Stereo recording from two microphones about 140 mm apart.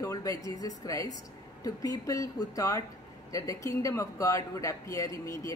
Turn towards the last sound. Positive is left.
turn(degrees=20)  # may be behind; listen again after turning